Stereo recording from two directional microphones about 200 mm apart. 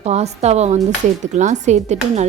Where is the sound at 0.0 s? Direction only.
35° right (ahead or behind).